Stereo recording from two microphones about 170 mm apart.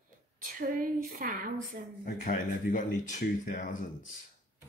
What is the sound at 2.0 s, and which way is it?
Speech, 55° left (ahead or behind).